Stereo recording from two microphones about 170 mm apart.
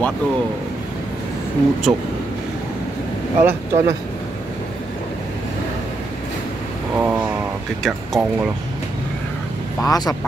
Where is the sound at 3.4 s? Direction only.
15° right (ahead or behind).